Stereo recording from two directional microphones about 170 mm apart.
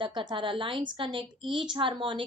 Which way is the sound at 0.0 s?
25° right (ahead or behind).